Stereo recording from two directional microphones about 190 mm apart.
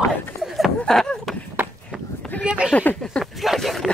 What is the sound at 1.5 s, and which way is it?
Run, 10° right (ahead or behind).